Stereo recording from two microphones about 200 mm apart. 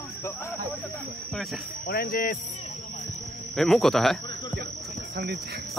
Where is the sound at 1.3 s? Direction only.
Centre (ahead or behind).